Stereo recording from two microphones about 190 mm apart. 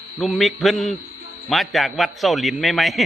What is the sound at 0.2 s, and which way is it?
A man's voice, centre (ahead or behind).